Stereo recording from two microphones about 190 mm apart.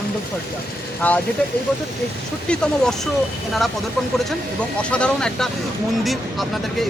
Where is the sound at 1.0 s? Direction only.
10° left (ahead or behind).